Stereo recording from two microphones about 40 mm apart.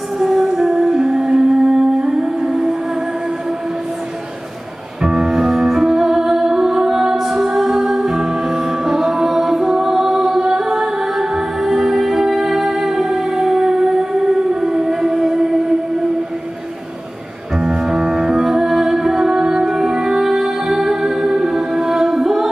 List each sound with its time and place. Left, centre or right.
0.2 s music: centre
5.0 s music: centre
7.2 s music: centre
17.6 s music: centre